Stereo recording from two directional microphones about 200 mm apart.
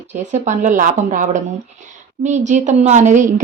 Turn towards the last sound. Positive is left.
turn(degrees=-35)  # may be behind; listen again after turning